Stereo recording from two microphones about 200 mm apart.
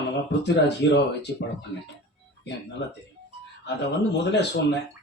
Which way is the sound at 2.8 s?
65° left (ahead or behind).